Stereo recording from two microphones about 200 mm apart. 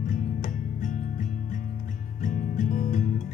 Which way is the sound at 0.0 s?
40° left (ahead or behind).